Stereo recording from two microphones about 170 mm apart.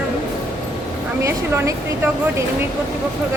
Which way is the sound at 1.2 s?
15° right (ahead or behind).